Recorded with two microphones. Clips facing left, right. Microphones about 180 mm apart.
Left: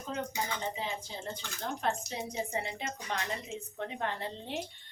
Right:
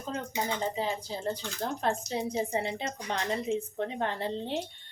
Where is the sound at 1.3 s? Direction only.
35° right (ahead or behind).